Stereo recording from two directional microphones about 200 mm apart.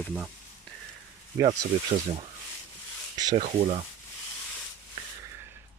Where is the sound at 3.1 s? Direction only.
20° right (ahead or behind).